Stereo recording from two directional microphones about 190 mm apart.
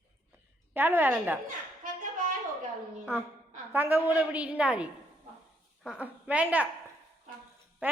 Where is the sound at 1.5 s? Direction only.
45° right (ahead or behind).